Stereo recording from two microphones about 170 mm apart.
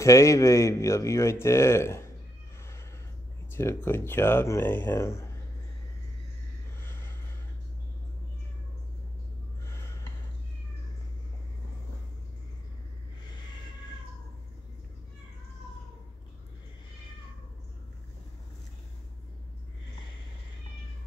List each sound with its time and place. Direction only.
0.0 s speech: 20° left (ahead or behind)
3.5 s speech: 15° left (ahead or behind)
6.8 s a sound: 15° left (ahead or behind)